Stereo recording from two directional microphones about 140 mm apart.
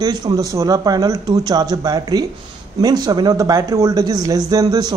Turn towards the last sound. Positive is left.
turn(degrees=-25)  # may be behind; listen again after turning